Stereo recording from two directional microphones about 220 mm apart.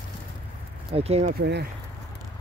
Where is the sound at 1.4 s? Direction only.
50° right (ahead or behind).